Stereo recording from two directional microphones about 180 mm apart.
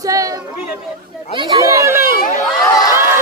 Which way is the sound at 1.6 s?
15° right (ahead or behind).